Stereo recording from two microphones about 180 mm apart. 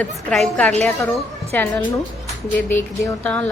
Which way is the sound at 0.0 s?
5° left (ahead or behind).